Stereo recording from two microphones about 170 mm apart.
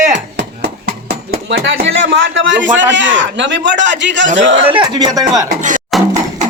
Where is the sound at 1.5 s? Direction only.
90° right.